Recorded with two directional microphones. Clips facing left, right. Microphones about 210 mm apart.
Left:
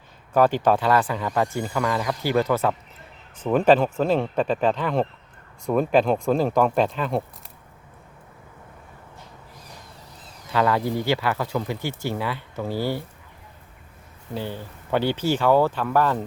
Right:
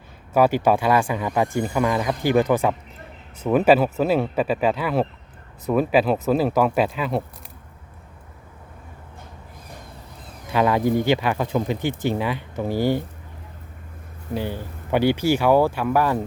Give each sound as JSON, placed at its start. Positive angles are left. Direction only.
{"t": 0.3, "sound": "speech", "side_deg": -10}
{"t": 10.5, "sound": "speech", "side_deg": -15}
{"t": 14.3, "sound": "speech", "side_deg": -15}